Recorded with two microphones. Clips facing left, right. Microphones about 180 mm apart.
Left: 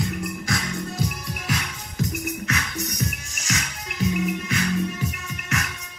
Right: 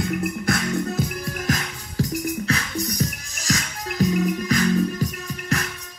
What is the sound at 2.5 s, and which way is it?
Music, 35° right (ahead or behind).